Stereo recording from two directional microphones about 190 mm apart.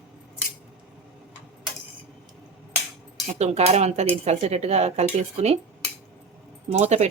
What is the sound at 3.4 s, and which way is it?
Speech, 35° right (ahead or behind).